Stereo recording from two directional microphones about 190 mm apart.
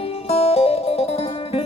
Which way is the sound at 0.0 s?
30° left (ahead or behind).